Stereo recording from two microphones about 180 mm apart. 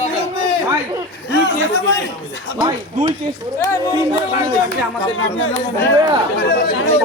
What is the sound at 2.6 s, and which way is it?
Speech, 25° right (ahead or behind).